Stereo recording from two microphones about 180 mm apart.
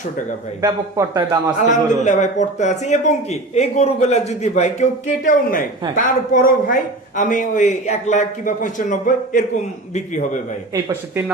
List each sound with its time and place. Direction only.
0.6 s speech: 25° right (ahead or behind)
1.6 s a man's voice: 40° left (ahead or behind)